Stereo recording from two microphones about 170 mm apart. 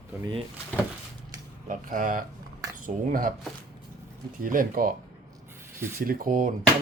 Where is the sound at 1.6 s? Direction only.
50° right (ahead or behind).